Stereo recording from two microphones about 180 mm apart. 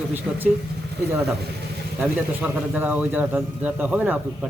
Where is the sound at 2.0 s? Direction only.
10° right (ahead or behind).